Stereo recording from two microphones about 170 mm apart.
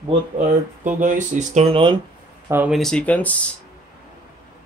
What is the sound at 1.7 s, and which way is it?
Speech, 30° right (ahead or behind).